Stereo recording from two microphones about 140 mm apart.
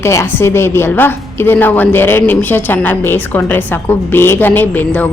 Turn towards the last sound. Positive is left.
turn(degrees=15)  # may be behind; listen again after turning